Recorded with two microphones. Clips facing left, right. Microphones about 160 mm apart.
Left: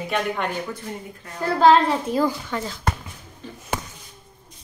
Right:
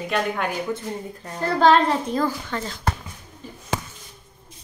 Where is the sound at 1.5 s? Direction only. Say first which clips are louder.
Left 1 dB; 5° left (ahead or behind).